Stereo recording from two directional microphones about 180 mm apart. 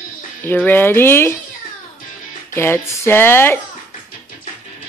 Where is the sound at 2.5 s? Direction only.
15° left (ahead or behind).